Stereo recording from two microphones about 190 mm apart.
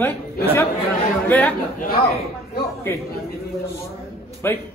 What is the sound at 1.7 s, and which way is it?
Speech, 55° left (ahead or behind).